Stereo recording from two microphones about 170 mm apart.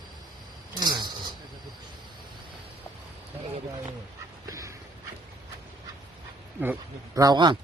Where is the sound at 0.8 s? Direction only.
25° right (ahead or behind).